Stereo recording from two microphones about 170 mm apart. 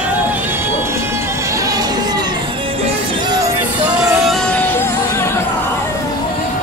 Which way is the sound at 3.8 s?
Centre (ahead or behind).